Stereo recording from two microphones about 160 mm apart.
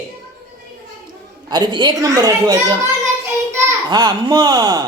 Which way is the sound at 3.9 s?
25° right (ahead or behind).